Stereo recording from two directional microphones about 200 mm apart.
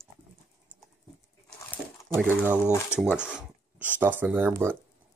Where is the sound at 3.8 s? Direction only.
10° right (ahead or behind).